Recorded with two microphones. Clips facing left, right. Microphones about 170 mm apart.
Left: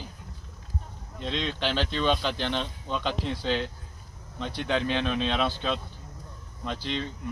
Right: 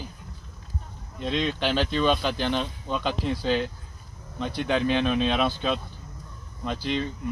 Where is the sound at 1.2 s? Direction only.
10° right (ahead or behind).